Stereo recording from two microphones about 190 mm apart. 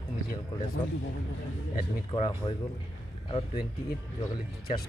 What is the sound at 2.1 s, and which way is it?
Speech, 25° left (ahead or behind).